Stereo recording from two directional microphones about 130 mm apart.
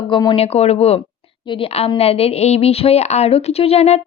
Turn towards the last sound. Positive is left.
turn(degrees=55)  # may be behind; listen again after turning